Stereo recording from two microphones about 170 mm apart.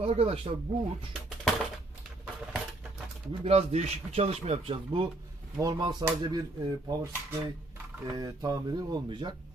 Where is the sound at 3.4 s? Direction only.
40° right (ahead or behind).